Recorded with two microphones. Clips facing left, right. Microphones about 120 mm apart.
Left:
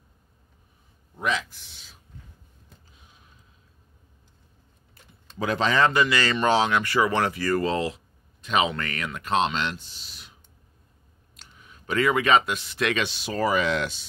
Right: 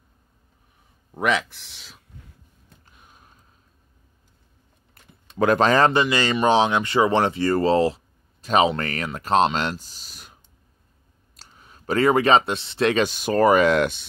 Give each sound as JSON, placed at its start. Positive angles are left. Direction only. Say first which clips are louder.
{"t": 1.1, "sound": "speech", "louder": "right 5 dB", "side_deg": -65}
{"t": 2.8, "sound": "a sound", "louder": "right 4 dB", "side_deg": -55}
{"t": 5.4, "sound": "speech", "louder": "right 6 dB", "side_deg": -50}
{"t": 5.9, "sound": "speech", "louder": "right 2 dB", "side_deg": -25}
{"t": 11.3, "sound": "speech", "louder": "right 1 dB", "side_deg": -35}
{"t": 13.1, "sound": "speech", "louder": "right 7 dB", "side_deg": -50}